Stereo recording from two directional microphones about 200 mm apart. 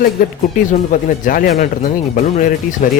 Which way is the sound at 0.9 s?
45° left (ahead or behind).